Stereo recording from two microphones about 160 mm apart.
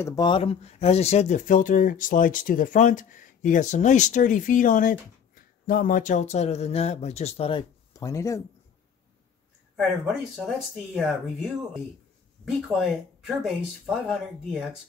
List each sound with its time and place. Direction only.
0.0 s speech: 25° left (ahead or behind)
7.9 s speech: 20° left (ahead or behind)
11.0 s speech: centre (ahead or behind)